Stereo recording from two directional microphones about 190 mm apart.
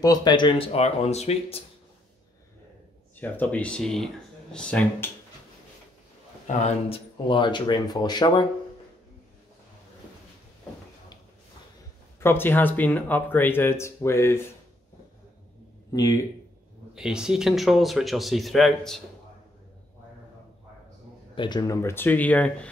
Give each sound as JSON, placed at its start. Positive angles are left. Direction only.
{"t": 0.0, "sound": "speech", "side_deg": 20}
{"t": 3.2, "sound": "speech", "side_deg": 10}
{"t": 6.4, "sound": "speech", "side_deg": 35}
{"t": 12.2, "sound": "speech", "side_deg": 10}
{"t": 15.9, "sound": "speech", "side_deg": 20}
{"t": 16.9, "sound": "speech", "side_deg": -5}
{"t": 21.4, "sound": "speech", "side_deg": 20}